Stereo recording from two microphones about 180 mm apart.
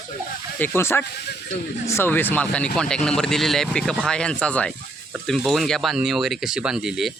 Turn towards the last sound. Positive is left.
turn(degrees=-5)  # may be behind; listen again after turning